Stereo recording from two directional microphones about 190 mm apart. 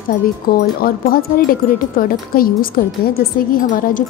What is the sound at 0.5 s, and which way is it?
A woman's voice, 50° left (ahead or behind).